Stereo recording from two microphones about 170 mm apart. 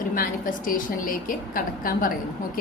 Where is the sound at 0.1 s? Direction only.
55° left (ahead or behind).